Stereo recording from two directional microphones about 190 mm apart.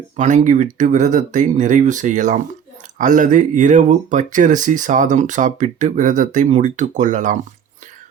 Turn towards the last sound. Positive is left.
turn(degrees=-40)  # may be behind; listen again after turning